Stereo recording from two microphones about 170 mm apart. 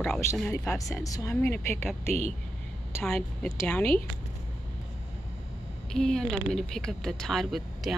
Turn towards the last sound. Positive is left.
turn(degrees=0)  # may be behind; listen again after turning